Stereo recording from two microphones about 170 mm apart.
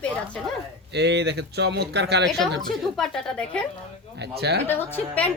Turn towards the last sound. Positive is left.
turn(degrees=10)  # may be behind; listen again after turning